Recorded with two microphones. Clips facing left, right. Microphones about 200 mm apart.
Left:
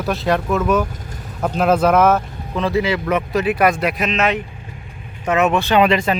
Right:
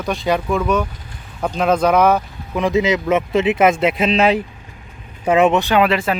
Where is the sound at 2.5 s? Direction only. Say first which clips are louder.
Right 2 dB; 15° right (ahead or behind).